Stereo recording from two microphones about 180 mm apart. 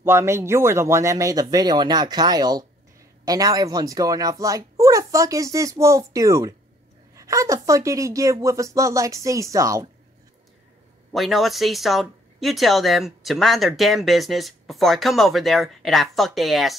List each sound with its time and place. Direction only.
0.0 s speech: 15° right (ahead or behind)
11.1 s speech: centre (ahead or behind)